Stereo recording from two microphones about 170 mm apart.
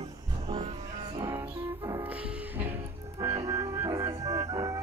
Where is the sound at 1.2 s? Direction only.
20° right (ahead or behind).